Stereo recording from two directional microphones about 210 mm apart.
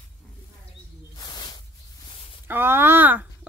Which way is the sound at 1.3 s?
20° left (ahead or behind).